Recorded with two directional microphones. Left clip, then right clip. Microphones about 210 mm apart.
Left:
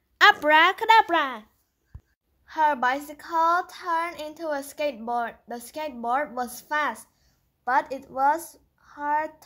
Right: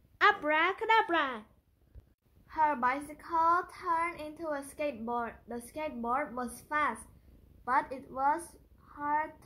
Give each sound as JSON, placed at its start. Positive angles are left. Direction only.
{"t": 0.2, "sound": "speech", "side_deg": 45}
{"t": 2.4, "sound": "a woman's voice", "side_deg": 45}